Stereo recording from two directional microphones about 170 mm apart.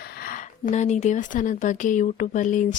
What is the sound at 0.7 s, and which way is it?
Speech, 40° left (ahead or behind).